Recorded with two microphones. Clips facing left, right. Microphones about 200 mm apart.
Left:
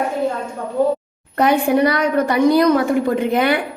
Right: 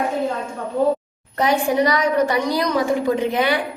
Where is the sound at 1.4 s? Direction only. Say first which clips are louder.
Left 3 dB; 60° left (ahead or behind).